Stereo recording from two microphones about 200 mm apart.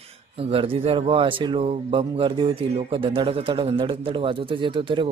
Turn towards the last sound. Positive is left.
turn(degrees=-25)  # may be behind; listen again after turning